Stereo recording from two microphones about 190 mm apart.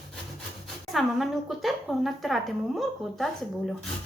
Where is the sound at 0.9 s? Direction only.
Centre (ahead or behind).